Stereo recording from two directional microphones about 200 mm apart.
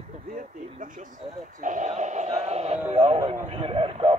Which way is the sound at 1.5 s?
40° right (ahead or behind).